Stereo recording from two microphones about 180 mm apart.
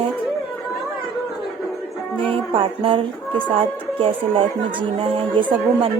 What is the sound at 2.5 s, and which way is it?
A woman's voice, 30° right (ahead or behind).